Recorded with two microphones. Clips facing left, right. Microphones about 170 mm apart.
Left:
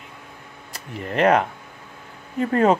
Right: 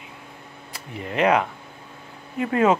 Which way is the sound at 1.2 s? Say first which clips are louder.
Left 2 dB; 45° left (ahead or behind).